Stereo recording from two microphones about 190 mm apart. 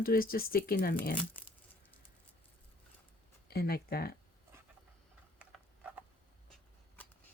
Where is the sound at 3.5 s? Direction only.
55° left (ahead or behind).